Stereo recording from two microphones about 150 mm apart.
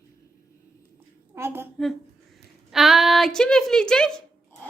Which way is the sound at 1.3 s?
15° right (ahead or behind).